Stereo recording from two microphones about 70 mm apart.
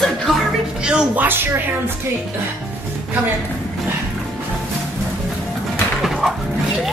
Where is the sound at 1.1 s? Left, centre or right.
Right.